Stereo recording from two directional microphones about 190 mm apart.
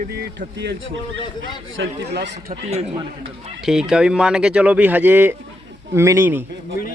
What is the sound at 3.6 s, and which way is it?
Speech, centre (ahead or behind).